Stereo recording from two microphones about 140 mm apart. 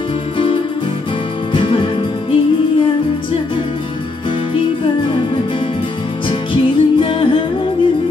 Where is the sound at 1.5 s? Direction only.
40° left (ahead or behind).